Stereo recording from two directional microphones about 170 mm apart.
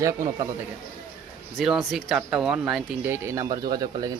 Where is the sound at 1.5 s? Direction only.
Centre (ahead or behind).